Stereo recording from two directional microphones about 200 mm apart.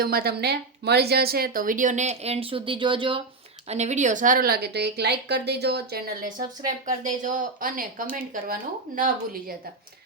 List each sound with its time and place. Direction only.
0.0 s a woman's voice: 50° right (ahead or behind)
6.8 s a woman's voice: 40° right (ahead or behind)